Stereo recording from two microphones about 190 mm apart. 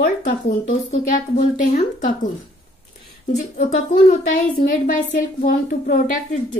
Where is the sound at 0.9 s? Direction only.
45° left (ahead or behind).